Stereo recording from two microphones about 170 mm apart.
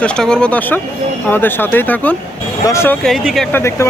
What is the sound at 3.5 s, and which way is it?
Speech, 15° left (ahead or behind).